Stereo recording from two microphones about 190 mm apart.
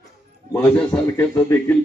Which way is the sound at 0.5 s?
5° left (ahead or behind).